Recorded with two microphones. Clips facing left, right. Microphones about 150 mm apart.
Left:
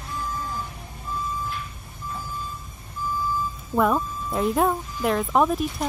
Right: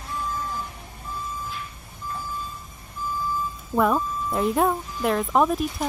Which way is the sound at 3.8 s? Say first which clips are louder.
Even; centre (ahead or behind).